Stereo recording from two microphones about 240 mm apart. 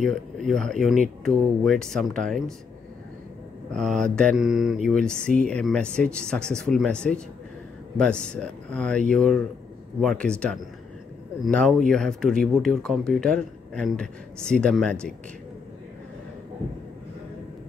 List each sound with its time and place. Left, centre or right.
0.0 s speech: centre
3.7 s speech: centre